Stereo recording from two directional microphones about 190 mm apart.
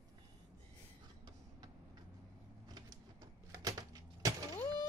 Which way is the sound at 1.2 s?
20° right (ahead or behind).